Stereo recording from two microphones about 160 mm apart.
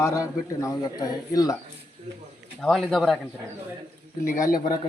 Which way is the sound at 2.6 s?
Centre (ahead or behind).